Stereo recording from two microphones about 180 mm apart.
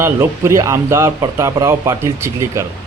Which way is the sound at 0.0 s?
15° right (ahead or behind).